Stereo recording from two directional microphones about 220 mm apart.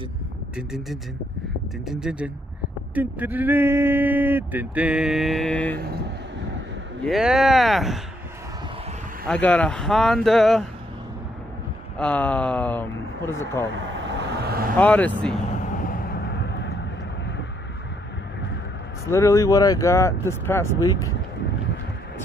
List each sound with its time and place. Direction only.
0.6 s speech: centre (ahead or behind)
5.8 s speech: 45° right (ahead or behind)
7.1 s speech: 5° right (ahead or behind)
9.3 s speech: 5° left (ahead or behind)
12.0 s speech: 5° left (ahead or behind)
14.0 s vehicle: 50° right (ahead or behind)
14.8 s speech: 5° left (ahead or behind)
15.8 s a sound: 40° left (ahead or behind)
19.0 s speech: 15° left (ahead or behind)